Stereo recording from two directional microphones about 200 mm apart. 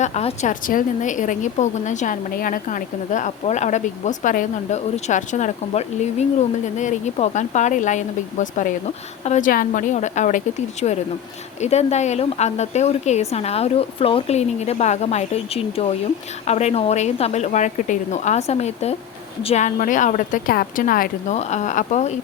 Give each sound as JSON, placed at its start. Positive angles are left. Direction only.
{"t": 0.0, "sound": "a woman's voice", "side_deg": 35}